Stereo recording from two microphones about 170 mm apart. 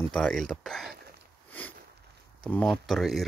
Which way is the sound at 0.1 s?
5° left (ahead or behind).